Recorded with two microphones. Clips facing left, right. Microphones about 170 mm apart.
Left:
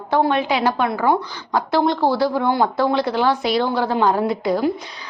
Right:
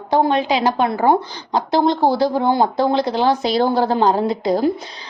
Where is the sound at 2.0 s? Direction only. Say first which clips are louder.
Right 2 dB; 40° right (ahead or behind).